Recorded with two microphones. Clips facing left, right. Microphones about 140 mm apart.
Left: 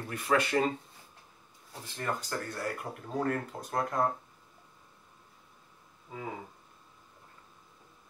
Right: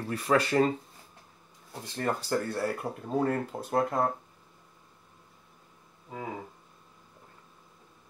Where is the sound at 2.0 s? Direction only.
30° right (ahead or behind).